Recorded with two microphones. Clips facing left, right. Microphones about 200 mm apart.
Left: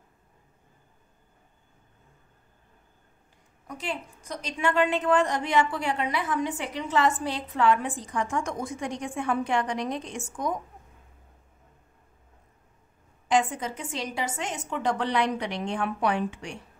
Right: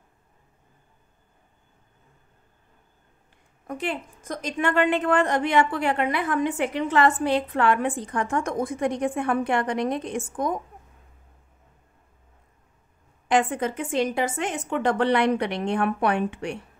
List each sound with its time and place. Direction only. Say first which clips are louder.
3.6 s a woman's voice: right 5 dB; 55° right (ahead or behind)
13.3 s a woman's voice: right 3 dB; 55° right (ahead or behind)